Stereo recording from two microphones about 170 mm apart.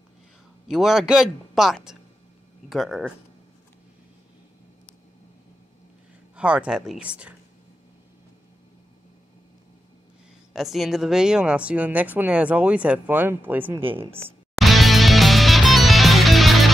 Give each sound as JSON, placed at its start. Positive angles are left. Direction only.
{"t": 0.7, "sound": "a man's voice", "side_deg": -5}
{"t": 6.3, "sound": "speech", "side_deg": -5}
{"t": 10.5, "sound": "speech", "side_deg": 0}
{"t": 13.7, "sound": "speech", "side_deg": -30}
{"t": 14.6, "sound": "music", "side_deg": 0}